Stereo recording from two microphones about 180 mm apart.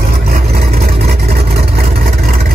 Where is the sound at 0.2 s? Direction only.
55° right (ahead or behind).